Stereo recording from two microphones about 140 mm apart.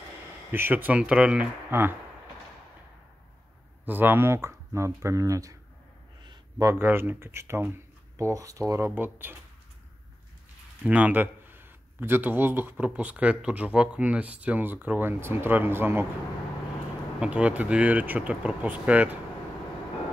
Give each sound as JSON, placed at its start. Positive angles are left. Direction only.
{"t": 0.5, "sound": "a man's voice", "side_deg": -15}
{"t": 3.8, "sound": "speech", "side_deg": -15}
{"t": 10.8, "sound": "a man's voice", "side_deg": -10}
{"t": 17.2, "sound": "a man's voice", "side_deg": -10}